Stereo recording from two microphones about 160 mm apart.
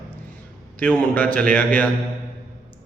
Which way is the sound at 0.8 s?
10° left (ahead or behind).